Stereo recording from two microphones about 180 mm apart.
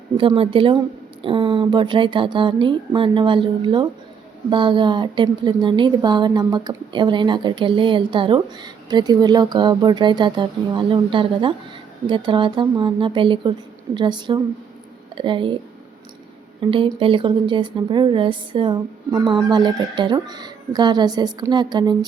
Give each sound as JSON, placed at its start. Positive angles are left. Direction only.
{"t": 0.2, "sound": "a woman's voice", "side_deg": -30}
{"t": 16.6, "sound": "a woman's voice", "side_deg": -30}